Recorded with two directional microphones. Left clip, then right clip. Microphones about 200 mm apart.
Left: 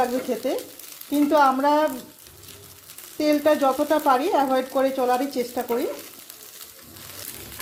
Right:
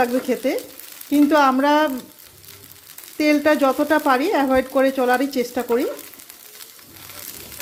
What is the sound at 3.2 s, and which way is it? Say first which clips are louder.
Speech: right 3 dB; 30° right (ahead or behind).